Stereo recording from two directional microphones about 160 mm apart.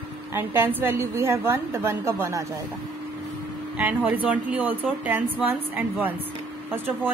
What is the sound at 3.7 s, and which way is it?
Speech, 10° right (ahead or behind).